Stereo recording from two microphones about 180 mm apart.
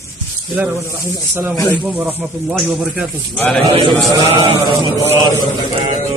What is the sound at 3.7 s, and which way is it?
A man's voice, 30° right (ahead or behind).